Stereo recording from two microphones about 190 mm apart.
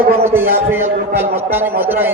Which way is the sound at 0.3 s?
10° right (ahead or behind).